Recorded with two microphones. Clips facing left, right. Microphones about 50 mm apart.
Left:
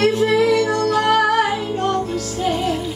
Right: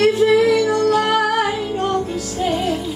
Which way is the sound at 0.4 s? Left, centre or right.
Centre.